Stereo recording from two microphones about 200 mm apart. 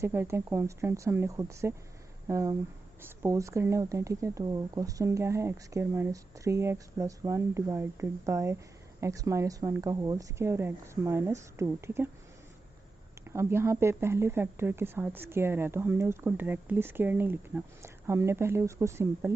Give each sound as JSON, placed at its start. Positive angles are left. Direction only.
{"t": 0.0, "sound": "speech", "side_deg": -10}
{"t": 13.3, "sound": "speech", "side_deg": -10}